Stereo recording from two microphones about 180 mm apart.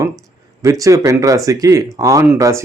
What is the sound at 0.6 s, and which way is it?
A man's voice, 20° right (ahead or behind).